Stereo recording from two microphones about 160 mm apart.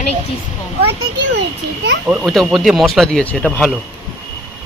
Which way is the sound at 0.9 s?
90° right.